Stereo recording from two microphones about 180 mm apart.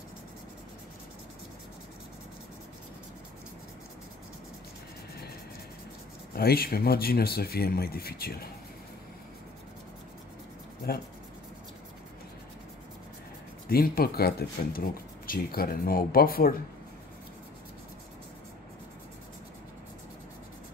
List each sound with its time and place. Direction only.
6.3 s speech: 55° left (ahead or behind)
13.7 s speech: 55° left (ahead or behind)